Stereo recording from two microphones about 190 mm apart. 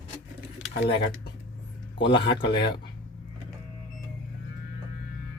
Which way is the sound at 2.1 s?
25° left (ahead or behind).